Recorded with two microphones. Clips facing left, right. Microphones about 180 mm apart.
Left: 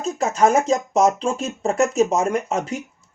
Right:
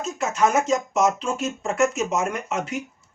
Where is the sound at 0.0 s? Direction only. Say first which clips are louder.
Left 4 dB; 35° left (ahead or behind).